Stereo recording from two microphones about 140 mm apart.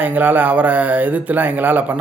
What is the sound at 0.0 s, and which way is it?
A man's voice, 15° right (ahead or behind).